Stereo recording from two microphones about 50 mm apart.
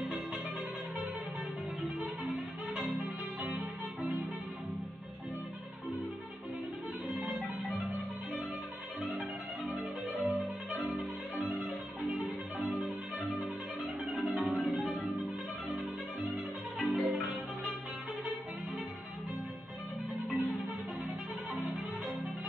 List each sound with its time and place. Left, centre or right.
7.2 s music: right
9.8 s music: centre
16.7 s music: centre